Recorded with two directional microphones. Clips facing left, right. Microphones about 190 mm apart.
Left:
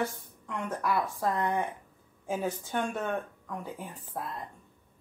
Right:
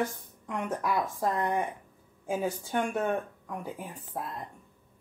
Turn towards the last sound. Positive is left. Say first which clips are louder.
# right 1 dB
turn(degrees=-10)  # may be behind; listen again after turning